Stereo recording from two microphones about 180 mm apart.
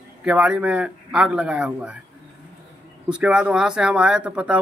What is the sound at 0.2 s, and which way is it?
Speech, 5° right (ahead or behind).